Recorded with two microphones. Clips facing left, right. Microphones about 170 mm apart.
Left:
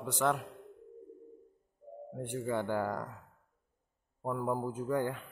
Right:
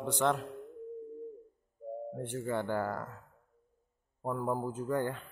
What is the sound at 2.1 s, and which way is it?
Speech, 10° left (ahead or behind).